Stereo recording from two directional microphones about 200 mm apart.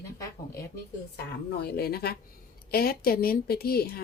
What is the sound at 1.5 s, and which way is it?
A woman's voice, 50° left (ahead or behind).